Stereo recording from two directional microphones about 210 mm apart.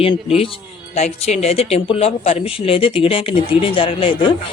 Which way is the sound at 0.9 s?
30° left (ahead or behind).